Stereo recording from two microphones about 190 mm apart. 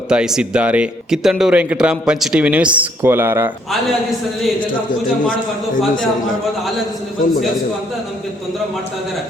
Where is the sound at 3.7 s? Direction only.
Centre (ahead or behind).